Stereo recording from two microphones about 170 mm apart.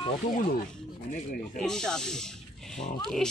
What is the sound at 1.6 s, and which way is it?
Speech, 5° left (ahead or behind).